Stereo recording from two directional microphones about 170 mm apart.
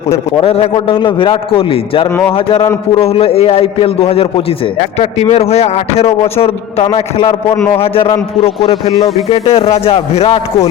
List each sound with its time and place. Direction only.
0.4 s a man's voice: 35° left (ahead or behind)